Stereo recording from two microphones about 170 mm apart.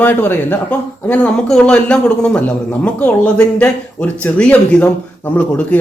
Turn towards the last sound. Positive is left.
turn(degrees=10)  # may be behind; listen again after turning